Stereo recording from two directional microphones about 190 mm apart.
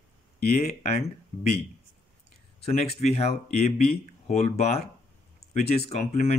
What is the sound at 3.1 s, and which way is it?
Speech, 35° left (ahead or behind).